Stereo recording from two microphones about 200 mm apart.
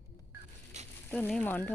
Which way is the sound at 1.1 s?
10° left (ahead or behind).